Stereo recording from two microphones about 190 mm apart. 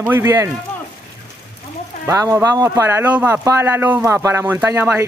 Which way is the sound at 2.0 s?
15° right (ahead or behind).